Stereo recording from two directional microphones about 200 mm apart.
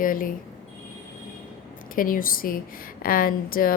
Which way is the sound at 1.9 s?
45° left (ahead or behind).